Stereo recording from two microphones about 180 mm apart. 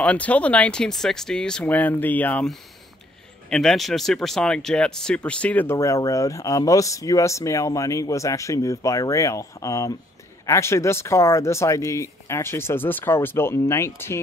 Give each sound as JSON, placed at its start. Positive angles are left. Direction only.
{"t": 0.0, "sound": "speech", "side_deg": 5}